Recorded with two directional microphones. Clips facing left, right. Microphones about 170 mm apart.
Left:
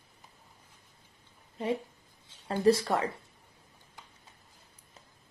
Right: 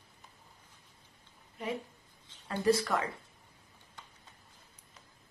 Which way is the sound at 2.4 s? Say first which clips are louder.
Left 4 dB; 30° left (ahead or behind).